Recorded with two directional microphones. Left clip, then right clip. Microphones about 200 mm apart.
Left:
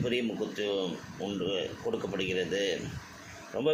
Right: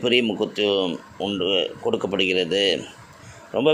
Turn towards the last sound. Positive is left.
turn(degrees=-45)  # may be behind; listen again after turning